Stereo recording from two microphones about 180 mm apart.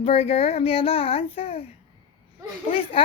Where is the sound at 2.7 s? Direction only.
30° left (ahead or behind).